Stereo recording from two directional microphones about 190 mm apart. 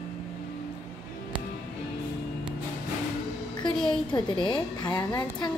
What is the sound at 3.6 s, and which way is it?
A woman's voice, 25° left (ahead or behind).